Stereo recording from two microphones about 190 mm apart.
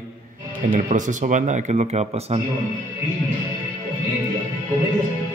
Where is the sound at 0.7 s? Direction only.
40° right (ahead or behind).